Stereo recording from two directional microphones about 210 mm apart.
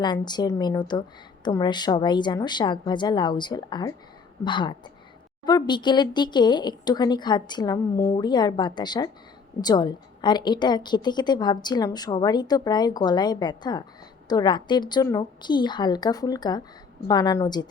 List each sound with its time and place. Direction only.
0.0 s a woman's voice: 20° left (ahead or behind)